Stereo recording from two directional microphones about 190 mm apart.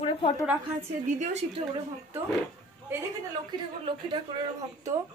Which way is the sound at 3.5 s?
25° right (ahead or behind).